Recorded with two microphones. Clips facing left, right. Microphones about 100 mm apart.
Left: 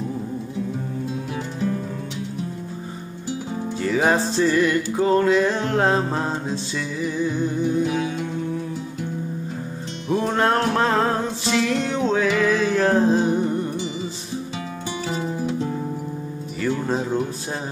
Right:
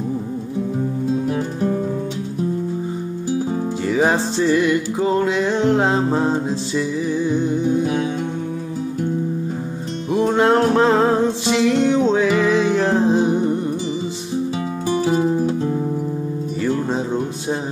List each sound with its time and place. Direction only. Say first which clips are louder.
3.8 s music: right 1 dB; 10° right (ahead or behind); by 7.4 s 30° right (ahead or behind)
10.1 s music: right 4 dB; 15° right (ahead or behind)
15.1 s music: right 8 dB; 40° right (ahead or behind)